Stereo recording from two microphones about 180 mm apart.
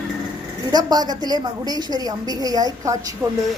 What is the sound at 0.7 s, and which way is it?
A woman's voice, 20° right (ahead or behind).